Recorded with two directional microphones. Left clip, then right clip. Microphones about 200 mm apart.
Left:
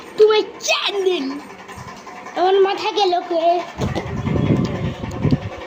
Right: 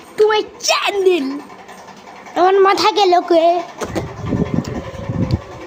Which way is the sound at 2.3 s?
15° right (ahead or behind).